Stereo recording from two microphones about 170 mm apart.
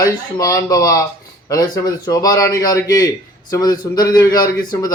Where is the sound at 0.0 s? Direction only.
20° left (ahead or behind).